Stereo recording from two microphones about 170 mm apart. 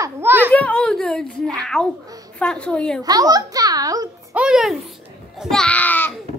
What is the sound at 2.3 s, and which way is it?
Speech, 5° left (ahead or behind).